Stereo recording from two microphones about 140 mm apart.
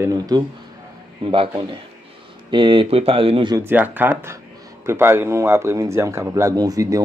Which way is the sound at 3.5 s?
15° right (ahead or behind).